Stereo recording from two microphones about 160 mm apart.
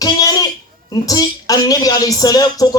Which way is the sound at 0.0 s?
25° left (ahead or behind).